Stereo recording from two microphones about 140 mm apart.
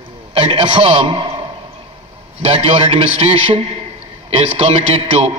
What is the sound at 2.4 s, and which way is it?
A man's voice, 45° right (ahead or behind).